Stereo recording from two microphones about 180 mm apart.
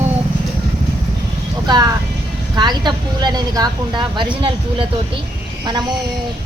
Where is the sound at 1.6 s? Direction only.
20° right (ahead or behind).